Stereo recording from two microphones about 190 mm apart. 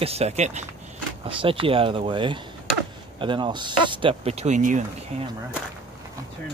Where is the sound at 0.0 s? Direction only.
35° right (ahead or behind).